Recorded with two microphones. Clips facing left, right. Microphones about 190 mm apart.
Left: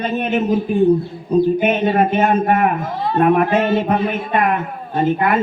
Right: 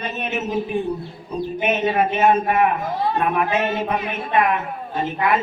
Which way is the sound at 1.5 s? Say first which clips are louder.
Left 4 dB; 50° left (ahead or behind).